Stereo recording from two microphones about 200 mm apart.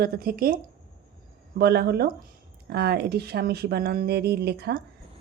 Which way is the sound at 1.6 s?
55° right (ahead or behind).